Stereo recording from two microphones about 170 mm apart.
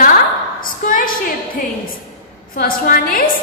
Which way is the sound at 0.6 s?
55° left (ahead or behind).